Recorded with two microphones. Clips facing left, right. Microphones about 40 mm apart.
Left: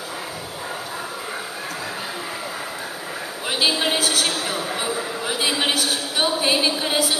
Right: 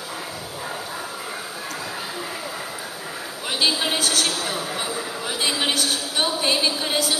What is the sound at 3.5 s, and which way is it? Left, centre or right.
A man's voice, centre.